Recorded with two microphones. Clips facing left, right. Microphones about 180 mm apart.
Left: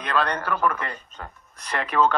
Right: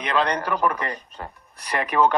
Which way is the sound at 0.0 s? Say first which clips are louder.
Right 2 dB; 20° right (ahead or behind).